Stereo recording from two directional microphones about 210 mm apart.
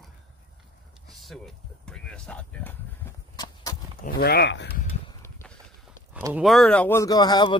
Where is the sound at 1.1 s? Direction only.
Centre (ahead or behind); by 3.8 s 15° left (ahead or behind).